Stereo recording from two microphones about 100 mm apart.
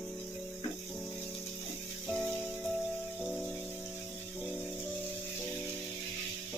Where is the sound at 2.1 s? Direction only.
Centre (ahead or behind).